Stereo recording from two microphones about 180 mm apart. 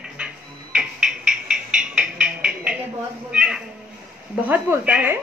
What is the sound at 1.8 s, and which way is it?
Music, 5° right (ahead or behind).